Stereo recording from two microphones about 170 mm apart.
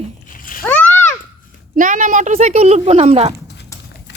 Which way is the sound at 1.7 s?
50° right (ahead or behind).